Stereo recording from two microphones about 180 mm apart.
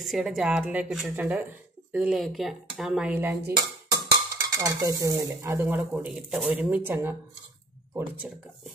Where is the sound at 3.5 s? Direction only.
20° right (ahead or behind).